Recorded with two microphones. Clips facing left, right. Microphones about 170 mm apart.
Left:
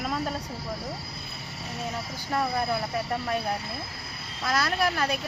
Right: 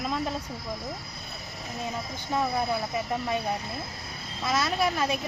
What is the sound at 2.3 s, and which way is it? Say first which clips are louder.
Speech: even; centre (ahead or behind).